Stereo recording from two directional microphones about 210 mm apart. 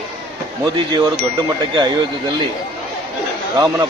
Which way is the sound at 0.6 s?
20° right (ahead or behind).